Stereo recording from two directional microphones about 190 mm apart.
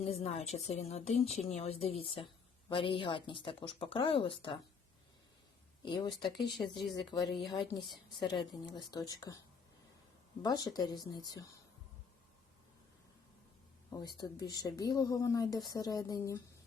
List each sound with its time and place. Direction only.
0.0 s a woman's voice: 35° left (ahead or behind)
5.8 s speech: 25° left (ahead or behind)
6.6 s speech: 10° left (ahead or behind)
7.3 s a woman's voice: centre (ahead or behind)
8.2 s speech: 20° left (ahead or behind)
10.4 s speech: 20° left (ahead or behind)
13.9 s speech: 20° left (ahead or behind)